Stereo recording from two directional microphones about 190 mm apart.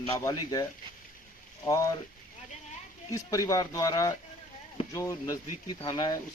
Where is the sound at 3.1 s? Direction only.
15° left (ahead or behind).